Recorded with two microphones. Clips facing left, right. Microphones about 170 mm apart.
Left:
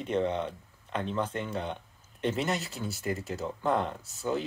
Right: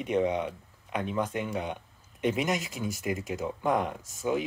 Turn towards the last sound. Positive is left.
turn(degrees=-10)  # may be behind; listen again after turning